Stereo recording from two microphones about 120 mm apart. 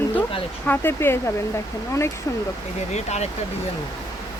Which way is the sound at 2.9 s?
70° left (ahead or behind).